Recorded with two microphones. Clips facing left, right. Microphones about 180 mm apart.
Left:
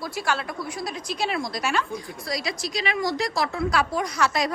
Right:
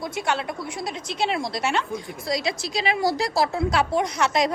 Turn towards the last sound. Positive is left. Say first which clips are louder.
# right 2 dB
turn(degrees=-20)  # may be behind; listen again after turning